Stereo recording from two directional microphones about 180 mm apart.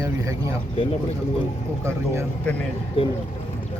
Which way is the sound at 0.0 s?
15° right (ahead or behind).